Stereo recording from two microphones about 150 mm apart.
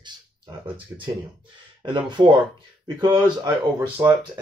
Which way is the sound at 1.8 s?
30° right (ahead or behind).